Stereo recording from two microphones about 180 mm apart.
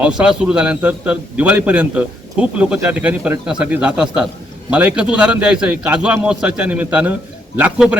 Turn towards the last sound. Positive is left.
turn(degrees=-10)  # may be behind; listen again after turning